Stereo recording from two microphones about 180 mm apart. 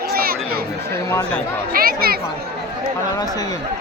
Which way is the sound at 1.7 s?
55° right (ahead or behind).